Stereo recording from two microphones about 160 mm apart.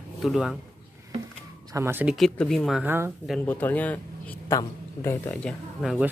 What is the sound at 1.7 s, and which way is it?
Speech, 15° right (ahead or behind).